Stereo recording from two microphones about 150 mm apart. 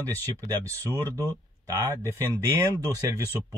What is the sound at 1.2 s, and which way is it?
Speech, 15° left (ahead or behind).